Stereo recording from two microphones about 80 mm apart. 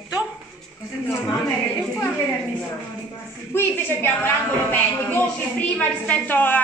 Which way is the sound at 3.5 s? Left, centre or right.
Left.